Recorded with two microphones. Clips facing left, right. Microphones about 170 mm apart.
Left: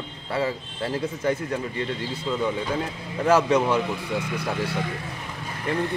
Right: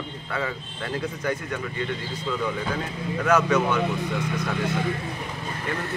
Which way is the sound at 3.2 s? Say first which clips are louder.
Left 2 dB; 30° left (ahead or behind).